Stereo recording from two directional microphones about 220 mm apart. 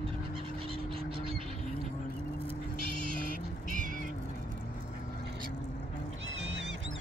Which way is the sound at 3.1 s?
40° right (ahead or behind).